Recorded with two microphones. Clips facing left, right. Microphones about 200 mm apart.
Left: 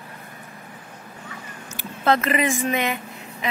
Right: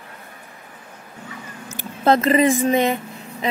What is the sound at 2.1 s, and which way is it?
Speech, 30° right (ahead or behind).